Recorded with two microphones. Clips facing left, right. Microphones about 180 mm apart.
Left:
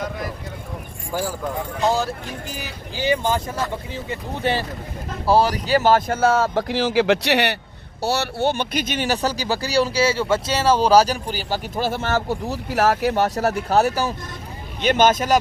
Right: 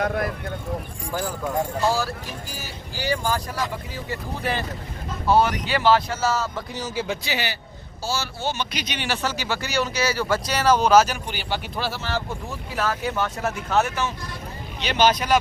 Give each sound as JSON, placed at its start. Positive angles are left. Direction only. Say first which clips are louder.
{"t": 0.0, "sound": "speech", "louder": "right 4 dB", "side_deg": -60}
{"t": 1.8, "sound": "speech", "louder": "left 2 dB", "side_deg": 20}
{"t": 6.6, "sound": "speech", "louder": "left 10 dB", "side_deg": 90}
{"t": 12.5, "sound": "speech", "louder": "left 10 dB", "side_deg": 80}
{"t": 13.2, "sound": "speech", "louder": "left 6 dB", "side_deg": 40}
{"t": 14.8, "sound": "speech", "louder": "left 4 dB", "side_deg": 50}